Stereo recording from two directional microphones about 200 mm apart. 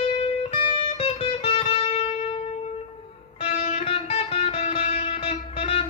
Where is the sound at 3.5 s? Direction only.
30° left (ahead or behind).